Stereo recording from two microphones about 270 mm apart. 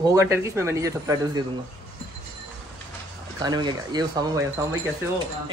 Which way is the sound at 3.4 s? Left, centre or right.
Centre.